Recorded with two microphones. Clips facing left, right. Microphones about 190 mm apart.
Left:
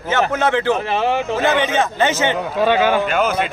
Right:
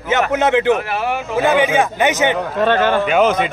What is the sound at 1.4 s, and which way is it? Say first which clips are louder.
A man's voice: right 6 dB; 10° right (ahead or behind).